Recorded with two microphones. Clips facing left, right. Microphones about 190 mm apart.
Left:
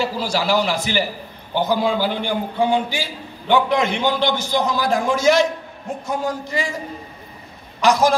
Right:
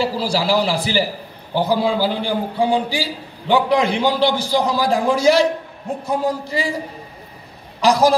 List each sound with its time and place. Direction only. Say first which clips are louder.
0.0 s a man's voice: right 2 dB; 30° right (ahead or behind)
7.8 s a man's voice: right 1 dB; 35° right (ahead or behind)